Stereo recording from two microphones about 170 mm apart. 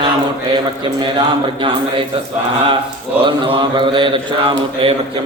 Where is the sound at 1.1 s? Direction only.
30° right (ahead or behind).